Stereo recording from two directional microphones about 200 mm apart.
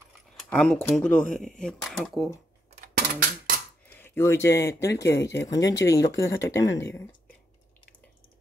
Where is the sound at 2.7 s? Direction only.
45° right (ahead or behind).